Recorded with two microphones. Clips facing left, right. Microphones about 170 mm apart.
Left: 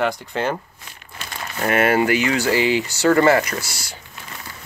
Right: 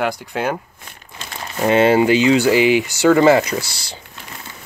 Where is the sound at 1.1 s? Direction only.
20° right (ahead or behind).